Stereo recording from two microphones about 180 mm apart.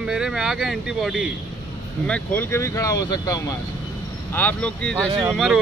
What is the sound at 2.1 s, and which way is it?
Speech, 15° left (ahead or behind).